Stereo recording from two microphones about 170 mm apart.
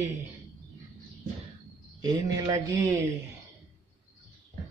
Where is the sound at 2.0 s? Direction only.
25° right (ahead or behind).